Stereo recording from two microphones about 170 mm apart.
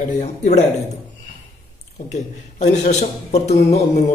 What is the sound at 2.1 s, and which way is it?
A man's voice, 40° left (ahead or behind).